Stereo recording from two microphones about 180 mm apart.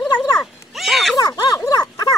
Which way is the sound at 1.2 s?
20° left (ahead or behind).